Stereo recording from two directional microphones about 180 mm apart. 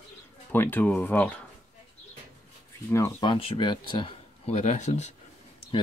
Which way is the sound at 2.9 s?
15° left (ahead or behind).